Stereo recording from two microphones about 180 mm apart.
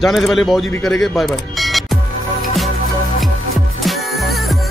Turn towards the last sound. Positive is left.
turn(degrees=0)  # may be behind; listen again after turning